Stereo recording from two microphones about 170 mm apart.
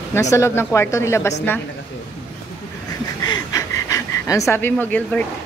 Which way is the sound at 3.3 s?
20° left (ahead or behind).